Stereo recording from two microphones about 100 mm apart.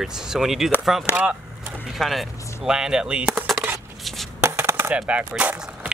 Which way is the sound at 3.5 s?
Centre (ahead or behind).